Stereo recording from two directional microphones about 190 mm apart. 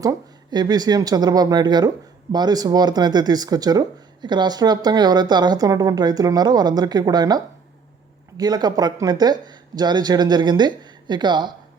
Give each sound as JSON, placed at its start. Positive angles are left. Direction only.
{"t": 0.0, "sound": "speech", "side_deg": -20}